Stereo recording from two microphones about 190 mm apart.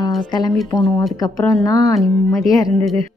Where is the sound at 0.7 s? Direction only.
20° left (ahead or behind).